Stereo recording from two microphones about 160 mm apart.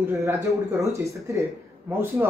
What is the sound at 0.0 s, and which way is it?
A man's voice, 15° right (ahead or behind).